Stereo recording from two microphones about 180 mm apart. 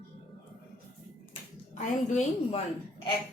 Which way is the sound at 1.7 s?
40° left (ahead or behind).